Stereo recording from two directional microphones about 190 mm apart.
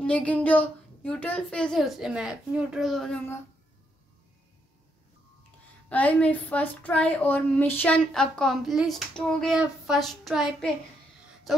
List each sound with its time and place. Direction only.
0.0 s a woman's voice: 5° left (ahead or behind)
5.9 s a woman's voice: 5° left (ahead or behind)